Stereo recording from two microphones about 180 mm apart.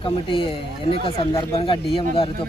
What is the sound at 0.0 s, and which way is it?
Speech, 30° left (ahead or behind).